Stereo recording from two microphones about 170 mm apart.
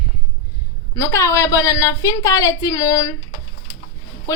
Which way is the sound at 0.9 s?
15° left (ahead or behind).